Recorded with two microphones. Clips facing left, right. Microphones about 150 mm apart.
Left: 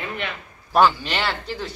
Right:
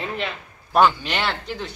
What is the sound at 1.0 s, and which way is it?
Speech, 15° right (ahead or behind).